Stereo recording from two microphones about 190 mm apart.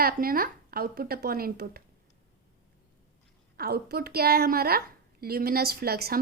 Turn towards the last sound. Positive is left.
turn(degrees=-55)  # may be behind; listen again after turning